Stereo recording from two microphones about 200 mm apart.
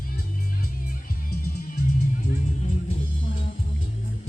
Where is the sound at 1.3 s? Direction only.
50° left (ahead or behind).